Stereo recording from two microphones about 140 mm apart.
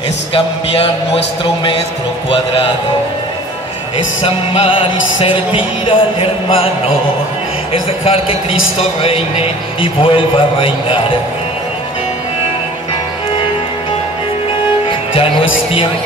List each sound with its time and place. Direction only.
0.3 s music: 40° left (ahead or behind)
4.2 s music: 40° left (ahead or behind)
8.0 s a man's voice: 45° left (ahead or behind)
9.0 s music: 40° left (ahead or behind)
14.9 s speech: 40° left (ahead or behind)